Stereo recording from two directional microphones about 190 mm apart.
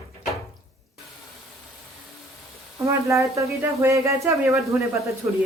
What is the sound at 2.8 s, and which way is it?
Speech, 15° right (ahead or behind).